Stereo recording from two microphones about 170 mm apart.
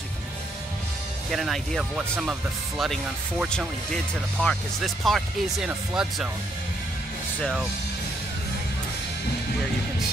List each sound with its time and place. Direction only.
1.3 s speech: centre (ahead or behind)